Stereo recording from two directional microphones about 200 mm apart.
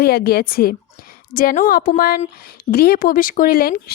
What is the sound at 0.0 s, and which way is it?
Speech, 50° left (ahead or behind).